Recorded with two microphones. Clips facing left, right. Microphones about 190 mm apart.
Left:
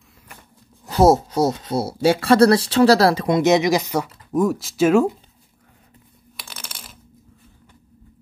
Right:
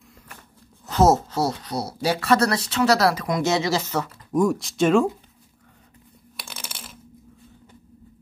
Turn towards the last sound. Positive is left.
turn(degrees=0)  # may be behind; listen again after turning